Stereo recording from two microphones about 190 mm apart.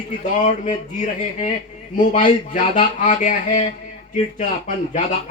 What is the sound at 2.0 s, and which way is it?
Speech, 45° left (ahead or behind).